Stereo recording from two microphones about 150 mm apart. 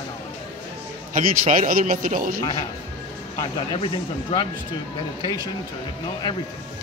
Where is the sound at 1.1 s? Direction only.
60° right (ahead or behind).